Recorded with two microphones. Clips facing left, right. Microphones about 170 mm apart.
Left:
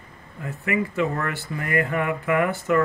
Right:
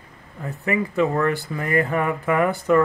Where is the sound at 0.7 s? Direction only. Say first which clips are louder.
Right 3 dB; 35° right (ahead or behind).